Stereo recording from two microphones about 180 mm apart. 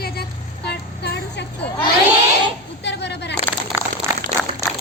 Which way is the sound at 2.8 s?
70° left (ahead or behind).